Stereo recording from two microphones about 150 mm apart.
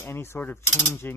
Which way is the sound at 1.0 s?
15° left (ahead or behind).